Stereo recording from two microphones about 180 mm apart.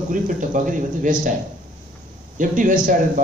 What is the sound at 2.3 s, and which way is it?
Speech, 45° right (ahead or behind).